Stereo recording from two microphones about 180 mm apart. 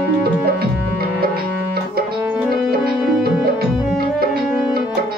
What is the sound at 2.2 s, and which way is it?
Tabla, 10° right (ahead or behind).